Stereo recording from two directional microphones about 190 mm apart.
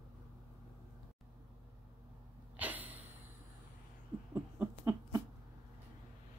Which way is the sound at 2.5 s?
10° right (ahead or behind).